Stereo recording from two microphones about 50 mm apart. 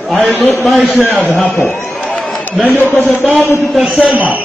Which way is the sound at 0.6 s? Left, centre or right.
Centre.